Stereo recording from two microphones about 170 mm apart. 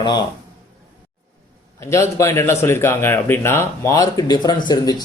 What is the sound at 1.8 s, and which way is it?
Speech, 15° left (ahead or behind).